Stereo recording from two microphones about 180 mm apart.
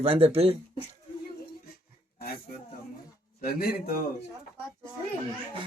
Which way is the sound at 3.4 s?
55° left (ahead or behind).